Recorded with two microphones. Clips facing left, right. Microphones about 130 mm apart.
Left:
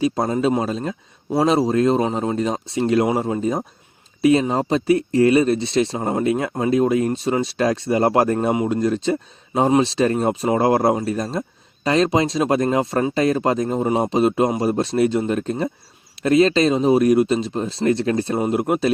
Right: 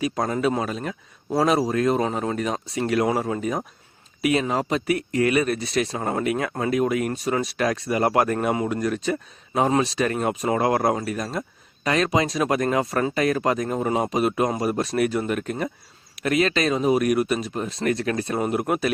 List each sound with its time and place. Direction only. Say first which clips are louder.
0.0 s speech: left 4 dB; 25° left (ahead or behind)